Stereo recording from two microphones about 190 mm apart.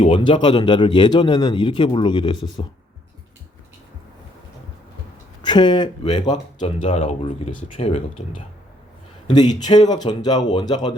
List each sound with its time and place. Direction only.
0.0 s speech: 25° left (ahead or behind)
5.4 s speech: 25° left (ahead or behind)
9.3 s speech: 20° left (ahead or behind)